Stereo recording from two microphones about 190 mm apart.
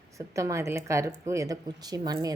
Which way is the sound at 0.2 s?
15° right (ahead or behind).